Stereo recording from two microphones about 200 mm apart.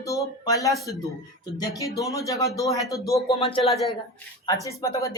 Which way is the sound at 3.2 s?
30° left (ahead or behind).